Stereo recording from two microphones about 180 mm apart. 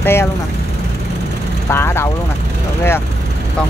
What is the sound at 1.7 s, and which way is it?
Speech, 15° left (ahead or behind).